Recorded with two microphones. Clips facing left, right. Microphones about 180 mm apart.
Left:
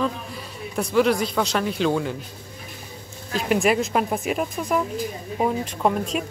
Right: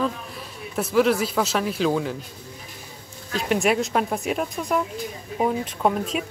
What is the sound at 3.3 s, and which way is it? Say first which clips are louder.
Speech: left 1 dB; centre (ahead or behind).